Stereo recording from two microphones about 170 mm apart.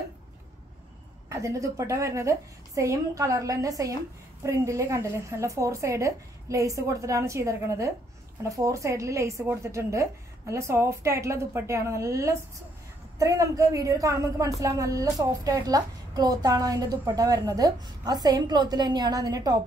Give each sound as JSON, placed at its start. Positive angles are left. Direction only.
{"t": 1.3, "sound": "a woman's voice", "side_deg": -20}